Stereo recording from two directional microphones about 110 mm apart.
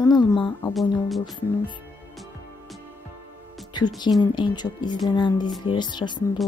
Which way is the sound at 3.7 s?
40° left (ahead or behind).